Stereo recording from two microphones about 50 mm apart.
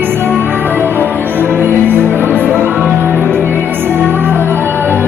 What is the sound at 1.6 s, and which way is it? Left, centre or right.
Music, right.